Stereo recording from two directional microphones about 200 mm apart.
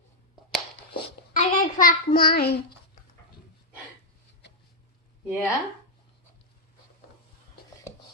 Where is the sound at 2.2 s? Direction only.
50° left (ahead or behind).